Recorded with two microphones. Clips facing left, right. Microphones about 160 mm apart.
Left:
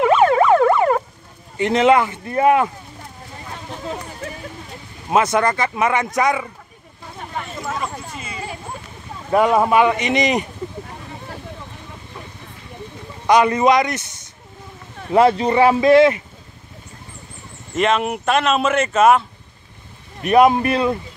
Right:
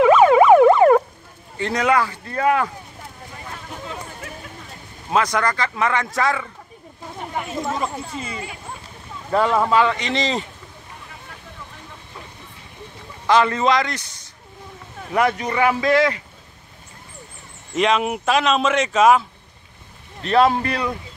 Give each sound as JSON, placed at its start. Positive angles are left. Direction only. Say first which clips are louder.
{"t": 0.4, "sound": "emergency vehicle", "louder": "right 3 dB", "side_deg": -15}
{"t": 1.6, "sound": "speech", "louder": "left 5 dB", "side_deg": 25}
{"t": 3.8, "sound": "a sound", "louder": "left 7 dB", "side_deg": 40}
{"t": 5.1, "sound": "speech", "louder": "left 3 dB", "side_deg": 25}
{"t": 7.3, "sound": "speech", "louder": "right 2 dB", "side_deg": -15}
{"t": 9.3, "sound": "speech", "louder": "left 3 dB", "side_deg": 15}
{"t": 13.3, "sound": "speech", "louder": "left 3 dB", "side_deg": 15}
{"t": 17.7, "sound": "speech", "louder": "left 1 dB", "side_deg": 0}
{"t": 20.2, "sound": "speech", "louder": "left 4 dB", "side_deg": 15}